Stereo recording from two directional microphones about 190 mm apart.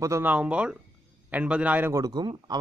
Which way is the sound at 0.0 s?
10° right (ahead or behind).